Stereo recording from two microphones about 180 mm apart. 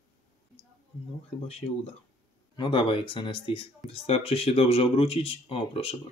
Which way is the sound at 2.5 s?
25° left (ahead or behind).